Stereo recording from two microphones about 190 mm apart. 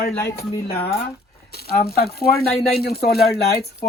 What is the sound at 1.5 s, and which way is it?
Speech, 55° left (ahead or behind).